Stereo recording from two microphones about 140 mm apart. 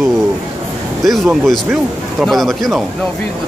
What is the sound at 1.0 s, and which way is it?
A man's voice, centre (ahead or behind).